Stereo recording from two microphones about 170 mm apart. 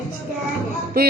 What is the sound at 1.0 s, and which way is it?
Speech, 65° right (ahead or behind).